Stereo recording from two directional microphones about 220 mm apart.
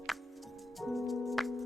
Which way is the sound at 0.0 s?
Centre (ahead or behind).